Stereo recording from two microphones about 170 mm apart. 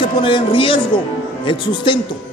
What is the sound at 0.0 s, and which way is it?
Speech, 30° left (ahead or behind).